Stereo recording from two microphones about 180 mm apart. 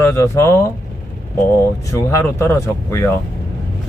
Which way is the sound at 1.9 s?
15° left (ahead or behind).